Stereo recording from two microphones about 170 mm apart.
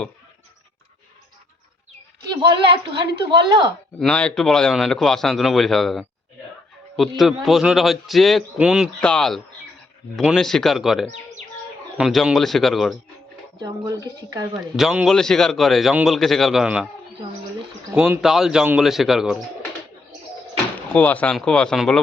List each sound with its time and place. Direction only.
2.4 s speech: 30° right (ahead or behind)
4.0 s a man's voice: 5° left (ahead or behind)
7.2 s a man's voice: centre (ahead or behind)
13.6 s speech: 25° right (ahead or behind)
14.8 s a man's voice: centre (ahead or behind)
17.9 s a man's voice: 5° right (ahead or behind)
20.7 s a man's voice: 10° left (ahead or behind)